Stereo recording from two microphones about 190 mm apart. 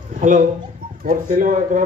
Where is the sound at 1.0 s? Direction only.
50° right (ahead or behind).